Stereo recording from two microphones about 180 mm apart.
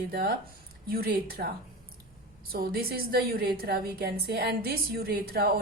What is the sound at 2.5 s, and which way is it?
A woman's voice, 55° right (ahead or behind).